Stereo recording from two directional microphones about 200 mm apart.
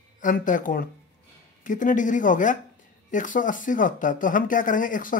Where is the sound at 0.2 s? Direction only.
40° left (ahead or behind).